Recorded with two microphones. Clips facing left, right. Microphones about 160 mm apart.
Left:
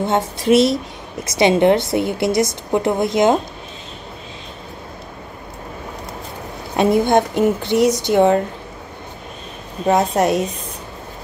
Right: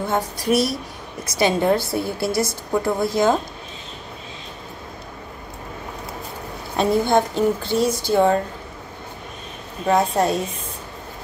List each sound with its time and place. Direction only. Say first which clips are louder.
0.0 s a woman's voice: left 4 dB; 25° left (ahead or behind)
6.8 s a woman's voice: left 3 dB; 20° left (ahead or behind)
10.1 s a woman's voice: left 3 dB; 20° left (ahead or behind)